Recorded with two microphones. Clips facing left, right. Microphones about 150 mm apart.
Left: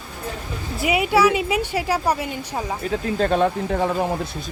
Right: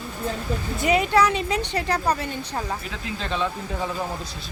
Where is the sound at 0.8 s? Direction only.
10° left (ahead or behind).